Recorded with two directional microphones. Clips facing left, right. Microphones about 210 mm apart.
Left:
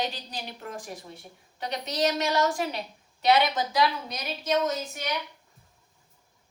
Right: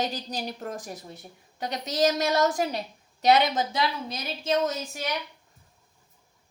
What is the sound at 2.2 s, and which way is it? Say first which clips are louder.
Speech: right 2 dB; 40° right (ahead or behind).